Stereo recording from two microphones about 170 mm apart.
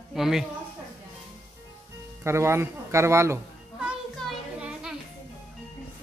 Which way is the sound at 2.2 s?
15° right (ahead or behind).